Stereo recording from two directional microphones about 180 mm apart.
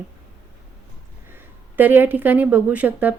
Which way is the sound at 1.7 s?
10° right (ahead or behind).